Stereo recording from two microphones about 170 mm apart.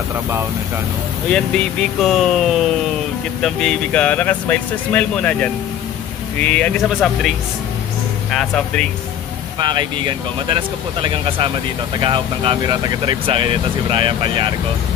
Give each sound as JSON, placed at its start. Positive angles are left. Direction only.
{"t": 1.3, "sound": "speech", "side_deg": 5}
{"t": 8.3, "sound": "speech", "side_deg": 5}
{"t": 9.6, "sound": "speech", "side_deg": -25}